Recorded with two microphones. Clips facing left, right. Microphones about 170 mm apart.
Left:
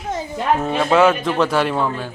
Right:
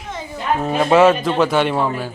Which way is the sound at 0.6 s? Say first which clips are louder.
Right 3 dB; 5° right (ahead or behind).